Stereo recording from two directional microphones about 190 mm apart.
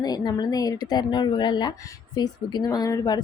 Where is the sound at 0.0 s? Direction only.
20° left (ahead or behind).